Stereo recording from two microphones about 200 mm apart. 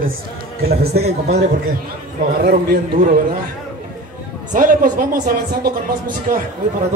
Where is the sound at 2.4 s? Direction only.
50° right (ahead or behind).